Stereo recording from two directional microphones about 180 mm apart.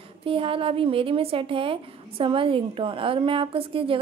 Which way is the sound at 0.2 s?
30° right (ahead or behind).